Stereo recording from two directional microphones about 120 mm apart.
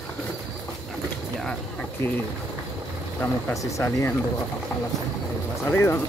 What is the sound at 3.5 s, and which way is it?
Speech, 25° left (ahead or behind).